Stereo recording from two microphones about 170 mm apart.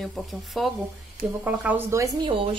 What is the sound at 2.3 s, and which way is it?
Speech, 30° right (ahead or behind).